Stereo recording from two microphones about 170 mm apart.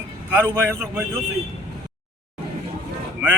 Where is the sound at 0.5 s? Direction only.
15° right (ahead or behind).